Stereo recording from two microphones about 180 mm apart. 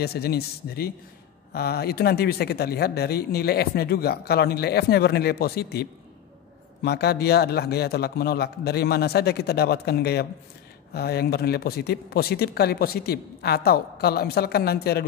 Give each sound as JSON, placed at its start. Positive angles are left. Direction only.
{"t": 0.0, "sound": "a man's voice", "side_deg": 60}